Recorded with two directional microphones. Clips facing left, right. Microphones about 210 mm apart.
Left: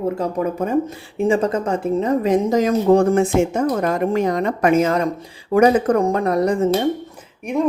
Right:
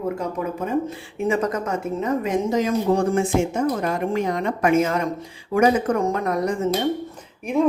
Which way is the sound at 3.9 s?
40° left (ahead or behind).